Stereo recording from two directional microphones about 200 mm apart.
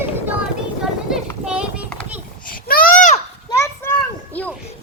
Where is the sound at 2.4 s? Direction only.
45° left (ahead or behind).